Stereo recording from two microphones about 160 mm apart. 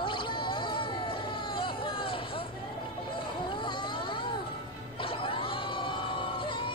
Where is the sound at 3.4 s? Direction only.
30° left (ahead or behind).